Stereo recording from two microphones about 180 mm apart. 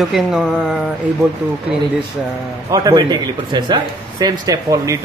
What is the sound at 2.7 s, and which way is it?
A man's voice, 25° right (ahead or behind).